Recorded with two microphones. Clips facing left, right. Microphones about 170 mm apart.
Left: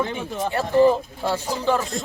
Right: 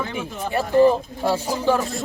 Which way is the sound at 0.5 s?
15° right (ahead or behind).